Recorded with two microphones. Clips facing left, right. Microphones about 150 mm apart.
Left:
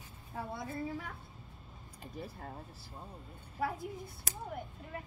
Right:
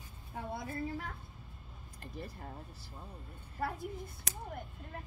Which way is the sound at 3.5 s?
5° left (ahead or behind).